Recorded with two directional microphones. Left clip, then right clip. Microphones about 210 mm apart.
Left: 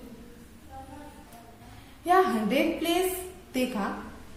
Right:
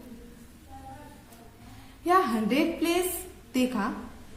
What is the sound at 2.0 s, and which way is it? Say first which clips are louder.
A woman's voice: left 1 dB; 25° right (ahead or behind).